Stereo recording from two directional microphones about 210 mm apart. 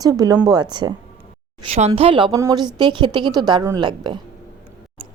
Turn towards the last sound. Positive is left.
turn(degrees=-20)  # may be behind; listen again after turning